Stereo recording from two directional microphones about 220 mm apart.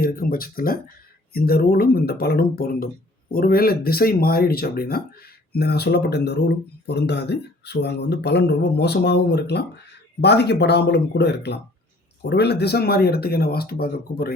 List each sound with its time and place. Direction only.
0.0 s speech: 40° left (ahead or behind)